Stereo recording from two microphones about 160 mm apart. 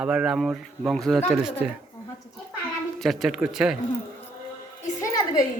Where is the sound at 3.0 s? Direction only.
Centre (ahead or behind).